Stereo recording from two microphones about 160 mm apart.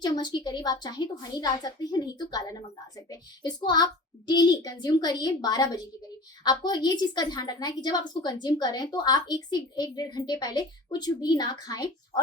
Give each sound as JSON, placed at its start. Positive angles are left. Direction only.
{"t": 0.0, "sound": "a woman's voice", "side_deg": 25}